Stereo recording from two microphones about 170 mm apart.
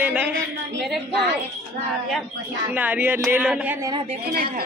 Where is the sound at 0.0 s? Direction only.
10° right (ahead or behind).